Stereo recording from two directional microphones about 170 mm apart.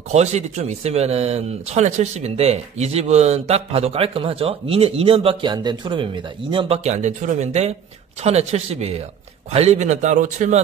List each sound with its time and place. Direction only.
0.1 s a man's voice: 40° right (ahead or behind)